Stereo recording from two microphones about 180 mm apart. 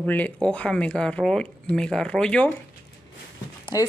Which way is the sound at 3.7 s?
20° left (ahead or behind).